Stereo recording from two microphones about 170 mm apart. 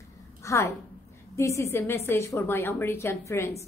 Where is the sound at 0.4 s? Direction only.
15° left (ahead or behind).